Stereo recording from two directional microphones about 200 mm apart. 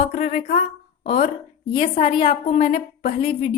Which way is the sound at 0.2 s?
35° left (ahead or behind).